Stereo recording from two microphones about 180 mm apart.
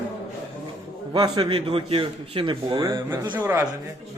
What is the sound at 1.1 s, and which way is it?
A man's voice, 20° right (ahead or behind).